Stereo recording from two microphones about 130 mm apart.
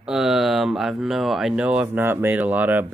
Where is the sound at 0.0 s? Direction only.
5° right (ahead or behind).